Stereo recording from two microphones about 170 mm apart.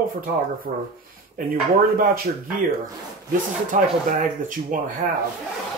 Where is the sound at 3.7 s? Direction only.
50° right (ahead or behind).